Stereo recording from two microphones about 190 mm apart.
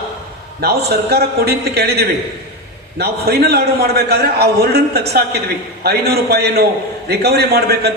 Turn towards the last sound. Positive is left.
turn(degrees=-55)  # may be behind; listen again after turning